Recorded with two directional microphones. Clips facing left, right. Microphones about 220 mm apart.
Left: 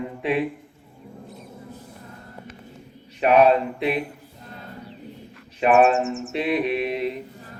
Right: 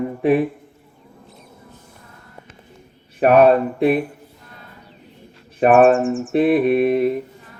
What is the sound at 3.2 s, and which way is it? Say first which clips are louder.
Speech: right 4 dB; 50° right (ahead or behind).